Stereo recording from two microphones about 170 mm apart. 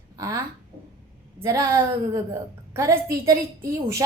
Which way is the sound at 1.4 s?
20° right (ahead or behind).